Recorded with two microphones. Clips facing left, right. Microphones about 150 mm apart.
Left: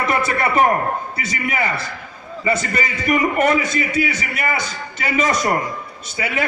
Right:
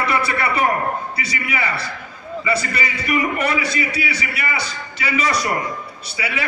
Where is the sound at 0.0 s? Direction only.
45° left (ahead or behind).